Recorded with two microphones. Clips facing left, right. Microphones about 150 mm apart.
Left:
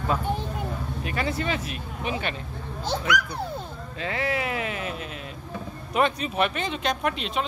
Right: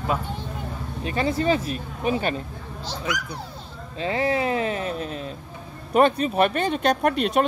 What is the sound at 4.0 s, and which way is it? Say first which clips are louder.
Speech: right 5 dB; 30° right (ahead or behind).